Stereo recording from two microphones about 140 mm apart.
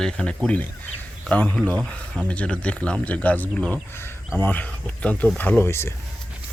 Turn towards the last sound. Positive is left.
turn(degrees=20)  # may be behind; listen again after turning